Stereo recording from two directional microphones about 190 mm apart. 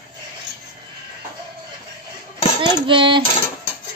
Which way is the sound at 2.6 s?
25° right (ahead or behind).